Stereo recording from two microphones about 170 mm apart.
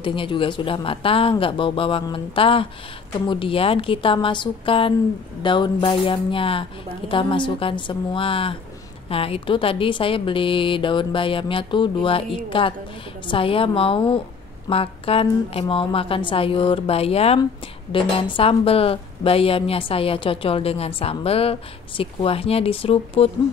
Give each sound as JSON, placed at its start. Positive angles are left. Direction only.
{"t": 0.0, "sound": "a woman's voice", "side_deg": 30}